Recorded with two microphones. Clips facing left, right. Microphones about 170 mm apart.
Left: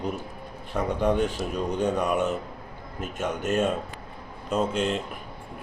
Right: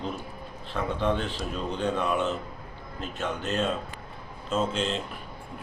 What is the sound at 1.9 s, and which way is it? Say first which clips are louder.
Speech: left 2 dB; 45° left (ahead or behind).